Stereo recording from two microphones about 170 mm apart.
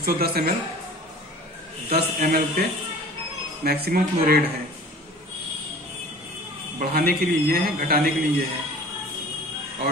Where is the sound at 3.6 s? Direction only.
65° right (ahead or behind).